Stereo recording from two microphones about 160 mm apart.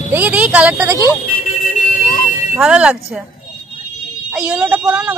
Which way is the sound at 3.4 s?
55° left (ahead or behind).